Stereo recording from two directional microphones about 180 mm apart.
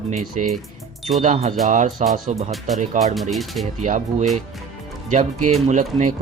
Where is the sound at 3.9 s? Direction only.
40° right (ahead or behind).